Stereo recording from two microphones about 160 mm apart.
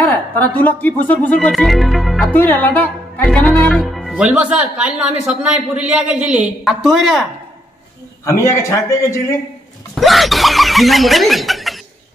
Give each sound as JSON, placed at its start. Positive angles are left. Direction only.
{"t": 0.1, "sound": "speech", "side_deg": 10}
{"t": 2.3, "sound": "speech", "side_deg": 10}
{"t": 8.3, "sound": "a man's voice", "side_deg": 20}
{"t": 9.9, "sound": "speech", "side_deg": 0}